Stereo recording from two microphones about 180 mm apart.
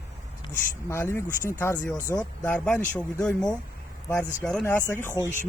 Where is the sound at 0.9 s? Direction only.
15° left (ahead or behind).